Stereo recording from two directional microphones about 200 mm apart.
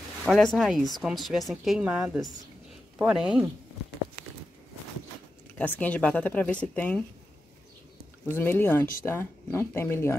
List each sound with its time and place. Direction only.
0.2 s speech: centre (ahead or behind)
5.6 s speech: 10° left (ahead or behind)
8.3 s speech: 10° left (ahead or behind)